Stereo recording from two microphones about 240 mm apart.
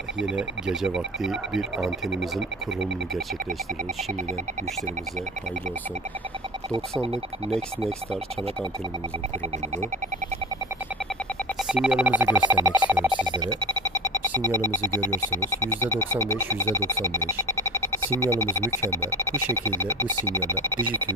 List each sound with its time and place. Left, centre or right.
0.3 s speech: centre
11.7 s telephone dialing: centre
13.2 s a sound: centre
15.9 s music: centre
17.6 s a sound: centre
18.4 s music: centre
20.6 s telephone dialing: centre